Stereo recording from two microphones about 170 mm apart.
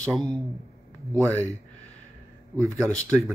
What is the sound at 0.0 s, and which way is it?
Speech, centre (ahead or behind).